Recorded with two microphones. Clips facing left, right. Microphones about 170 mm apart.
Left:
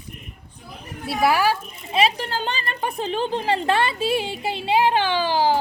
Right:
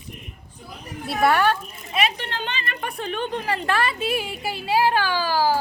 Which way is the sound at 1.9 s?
30° left (ahead or behind).